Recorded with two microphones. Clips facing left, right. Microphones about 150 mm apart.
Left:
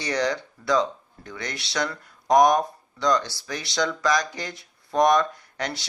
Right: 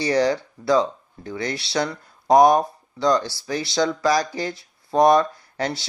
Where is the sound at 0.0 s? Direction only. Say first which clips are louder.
Right 6 dB; 30° right (ahead or behind).